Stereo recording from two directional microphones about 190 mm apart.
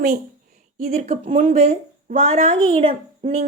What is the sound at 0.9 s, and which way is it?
A woman's voice, 45° right (ahead or behind).